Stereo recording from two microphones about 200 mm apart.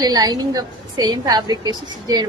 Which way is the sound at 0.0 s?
20° right (ahead or behind).